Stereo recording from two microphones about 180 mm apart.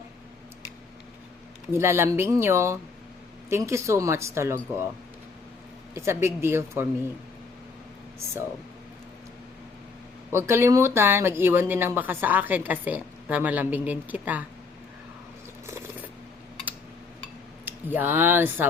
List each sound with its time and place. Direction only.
1.7 s speech: 15° right (ahead or behind)
5.9 s speech: 15° right (ahead or behind)
10.3 s speech: 15° right (ahead or behind)
15.6 s a sound: 15° right (ahead or behind)
17.7 s speech: 10° right (ahead or behind)